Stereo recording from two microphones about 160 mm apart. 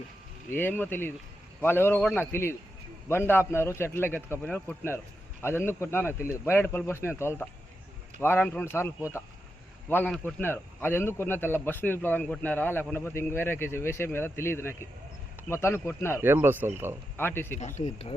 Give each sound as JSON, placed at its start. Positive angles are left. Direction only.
{"t": 0.5, "sound": "speech", "side_deg": 10}
{"t": 10.2, "sound": "speech", "side_deg": 10}
{"t": 16.2, "sound": "speech", "side_deg": -15}
{"t": 17.2, "sound": "speech", "side_deg": 15}
{"t": 17.6, "sound": "speech", "side_deg": 45}